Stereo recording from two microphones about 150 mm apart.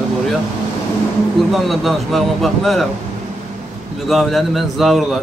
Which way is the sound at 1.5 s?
Centre (ahead or behind).